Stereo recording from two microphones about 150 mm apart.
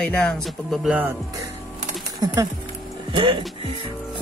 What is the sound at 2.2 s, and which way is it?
Speech, 25° right (ahead or behind).